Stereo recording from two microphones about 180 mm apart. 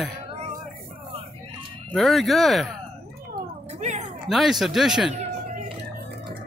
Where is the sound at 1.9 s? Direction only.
Centre (ahead or behind).